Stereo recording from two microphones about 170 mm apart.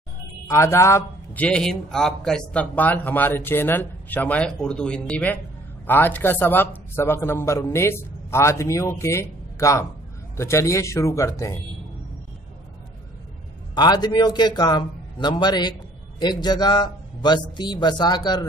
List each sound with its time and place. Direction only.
0.5 s a man's voice: 15° left (ahead or behind)
13.7 s speech: 25° left (ahead or behind)